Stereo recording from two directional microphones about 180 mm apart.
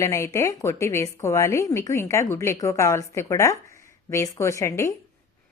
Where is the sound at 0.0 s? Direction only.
15° left (ahead or behind).